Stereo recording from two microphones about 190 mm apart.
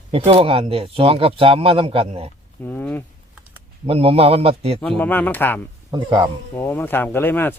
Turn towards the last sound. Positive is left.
turn(degrees=10)  # may be behind; listen again after turning